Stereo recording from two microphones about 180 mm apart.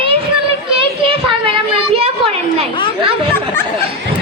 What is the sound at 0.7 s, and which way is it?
A child's voice, 30° right (ahead or behind).